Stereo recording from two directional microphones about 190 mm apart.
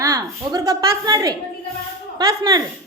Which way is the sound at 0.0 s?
20° right (ahead or behind).